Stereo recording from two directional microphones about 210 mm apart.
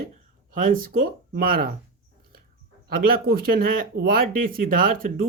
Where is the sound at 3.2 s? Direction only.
45° right (ahead or behind).